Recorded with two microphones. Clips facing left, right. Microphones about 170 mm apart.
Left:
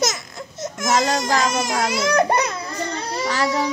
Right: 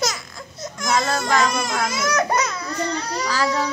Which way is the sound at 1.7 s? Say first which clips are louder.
Left 3 dB; 30° left (ahead or behind).